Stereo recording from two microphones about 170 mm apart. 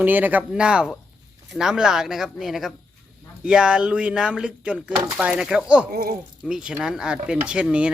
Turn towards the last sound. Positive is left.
turn(degrees=-5)  # may be behind; listen again after turning